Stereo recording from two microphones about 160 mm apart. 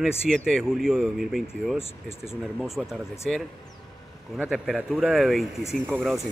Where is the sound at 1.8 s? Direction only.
40° left (ahead or behind).